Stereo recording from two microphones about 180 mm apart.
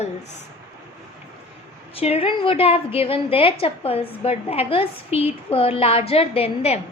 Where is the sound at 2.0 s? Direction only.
35° left (ahead or behind).